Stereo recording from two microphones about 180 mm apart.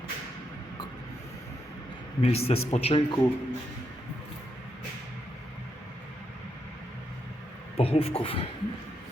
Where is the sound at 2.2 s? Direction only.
35° left (ahead or behind).